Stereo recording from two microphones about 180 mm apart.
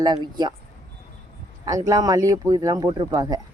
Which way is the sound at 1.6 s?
20° right (ahead or behind).